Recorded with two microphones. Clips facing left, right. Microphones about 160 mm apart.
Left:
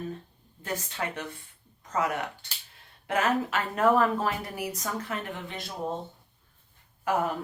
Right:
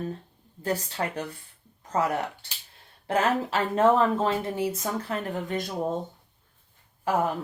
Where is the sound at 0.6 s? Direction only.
35° right (ahead or behind).